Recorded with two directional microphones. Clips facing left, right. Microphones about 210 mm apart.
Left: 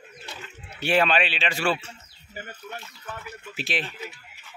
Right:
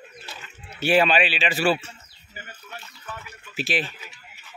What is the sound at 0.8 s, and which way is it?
Speech, 5° right (ahead or behind).